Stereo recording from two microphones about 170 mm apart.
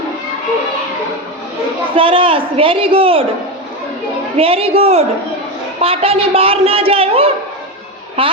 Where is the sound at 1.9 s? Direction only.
30° right (ahead or behind).